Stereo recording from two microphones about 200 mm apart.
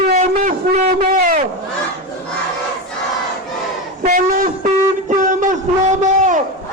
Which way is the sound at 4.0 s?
40° right (ahead or behind).